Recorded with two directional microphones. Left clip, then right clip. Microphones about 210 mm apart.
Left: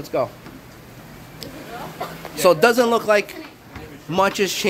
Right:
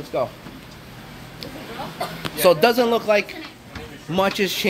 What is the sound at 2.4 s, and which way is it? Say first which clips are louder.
A man's voice: left 1 dB; 10° left (ahead or behind).